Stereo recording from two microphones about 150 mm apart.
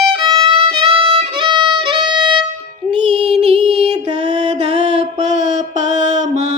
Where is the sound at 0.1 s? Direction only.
35° right (ahead or behind).